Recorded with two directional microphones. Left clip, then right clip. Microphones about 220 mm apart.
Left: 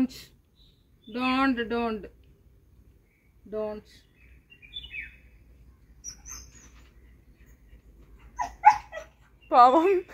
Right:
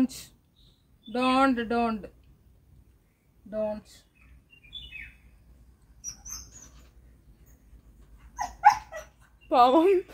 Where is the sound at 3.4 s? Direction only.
35° right (ahead or behind).